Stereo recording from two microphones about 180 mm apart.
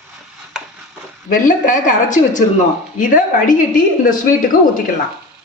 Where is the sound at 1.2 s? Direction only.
50° left (ahead or behind).